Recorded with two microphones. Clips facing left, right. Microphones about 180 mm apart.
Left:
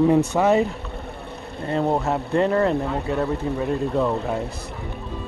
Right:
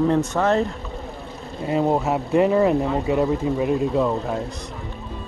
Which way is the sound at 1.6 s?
5° right (ahead or behind).